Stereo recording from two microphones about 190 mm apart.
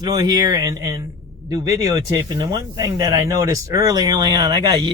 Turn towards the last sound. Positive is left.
turn(degrees=-25)  # may be behind; listen again after turning